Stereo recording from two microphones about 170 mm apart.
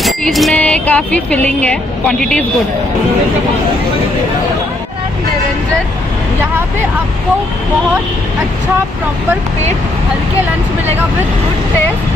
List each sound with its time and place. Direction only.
0.0 s speech: centre (ahead or behind)